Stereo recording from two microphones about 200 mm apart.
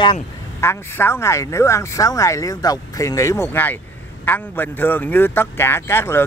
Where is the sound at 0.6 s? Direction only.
10° left (ahead or behind).